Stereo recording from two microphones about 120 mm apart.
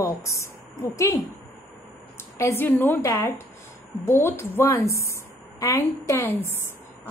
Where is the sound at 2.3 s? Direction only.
25° left (ahead or behind).